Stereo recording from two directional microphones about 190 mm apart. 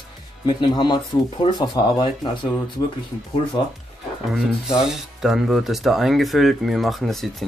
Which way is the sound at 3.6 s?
25° left (ahead or behind).